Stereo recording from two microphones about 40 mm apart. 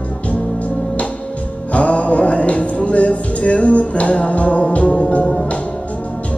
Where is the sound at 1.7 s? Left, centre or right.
Left.